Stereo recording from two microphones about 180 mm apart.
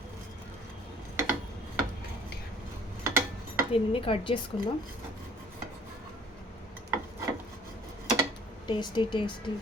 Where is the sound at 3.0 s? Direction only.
15° right (ahead or behind).